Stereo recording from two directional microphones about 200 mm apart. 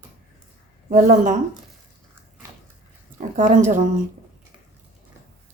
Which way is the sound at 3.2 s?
40° right (ahead or behind).